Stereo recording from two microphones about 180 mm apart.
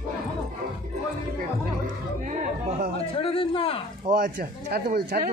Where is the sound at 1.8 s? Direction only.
45° right (ahead or behind).